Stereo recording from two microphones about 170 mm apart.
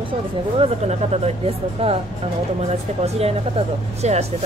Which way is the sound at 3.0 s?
35° right (ahead or behind).